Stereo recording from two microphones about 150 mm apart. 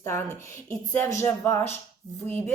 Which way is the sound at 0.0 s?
20° left (ahead or behind).